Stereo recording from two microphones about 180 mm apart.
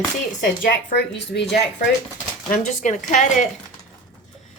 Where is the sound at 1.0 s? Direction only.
70° left (ahead or behind).